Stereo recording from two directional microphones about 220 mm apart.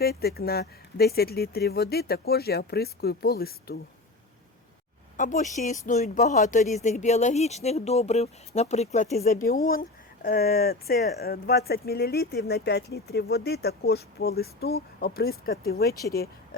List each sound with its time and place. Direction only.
0.0 s speech: 45° left (ahead or behind)
5.1 s speech: 35° left (ahead or behind)